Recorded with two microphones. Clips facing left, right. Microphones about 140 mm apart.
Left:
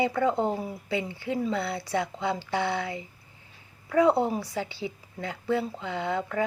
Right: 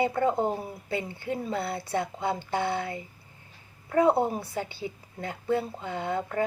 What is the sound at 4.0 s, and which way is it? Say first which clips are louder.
Speech: left 1 dB; 50° right (ahead or behind).